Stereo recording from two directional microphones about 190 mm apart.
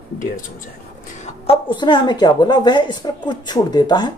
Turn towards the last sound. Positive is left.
turn(degrees=25)  # may be behind; listen again after turning